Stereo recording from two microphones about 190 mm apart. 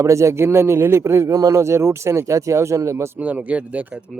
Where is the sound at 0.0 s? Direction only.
15° right (ahead or behind).